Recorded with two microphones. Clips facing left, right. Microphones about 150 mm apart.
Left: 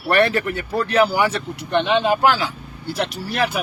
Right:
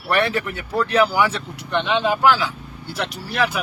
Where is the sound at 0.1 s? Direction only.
50° left (ahead or behind).